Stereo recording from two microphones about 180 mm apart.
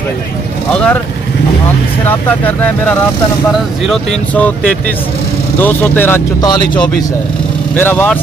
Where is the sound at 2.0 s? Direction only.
10° left (ahead or behind).